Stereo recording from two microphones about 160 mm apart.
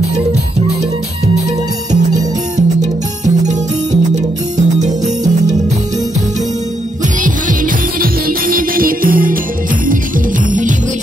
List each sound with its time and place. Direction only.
2.1 s music: 45° right (ahead or behind)
7.2 s music: 55° right (ahead or behind)